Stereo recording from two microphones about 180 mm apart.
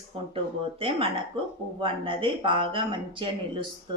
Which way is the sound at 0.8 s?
30° right (ahead or behind).